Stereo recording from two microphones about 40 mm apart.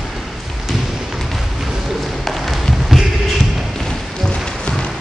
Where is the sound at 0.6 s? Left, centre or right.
Centre.